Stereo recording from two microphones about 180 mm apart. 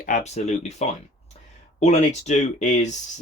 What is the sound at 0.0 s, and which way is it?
Speech, 40° left (ahead or behind).